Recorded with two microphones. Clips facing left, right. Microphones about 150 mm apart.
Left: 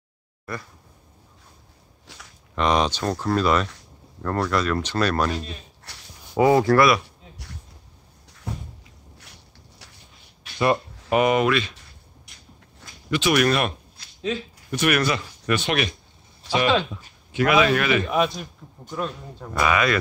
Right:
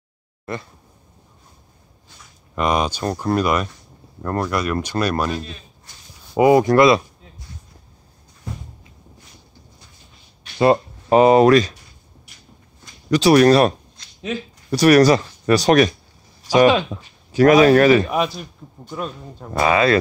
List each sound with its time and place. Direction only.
0.5 s speech: 25° right (ahead or behind)
2.1 s speech: 90° left
2.5 s speech: 10° right (ahead or behind)
5.9 s a sound: 70° left (ahead or behind)
6.3 s speech: 15° right (ahead or behind)
10.6 s speech: 30° right (ahead or behind)
13.1 s speech: 35° right (ahead or behind)
14.0 s a sound: 5° left (ahead or behind)
14.7 s speech: 35° right (ahead or behind)
18.1 s a man's voice: 5° right (ahead or behind)
19.6 s speech: 30° right (ahead or behind)